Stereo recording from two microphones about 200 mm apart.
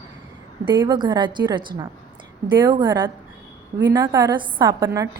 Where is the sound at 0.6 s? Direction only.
20° right (ahead or behind).